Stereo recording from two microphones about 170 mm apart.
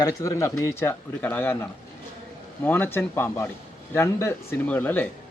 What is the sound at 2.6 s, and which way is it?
Speech, 10° left (ahead or behind).